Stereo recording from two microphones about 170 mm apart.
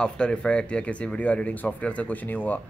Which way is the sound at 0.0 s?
5° left (ahead or behind).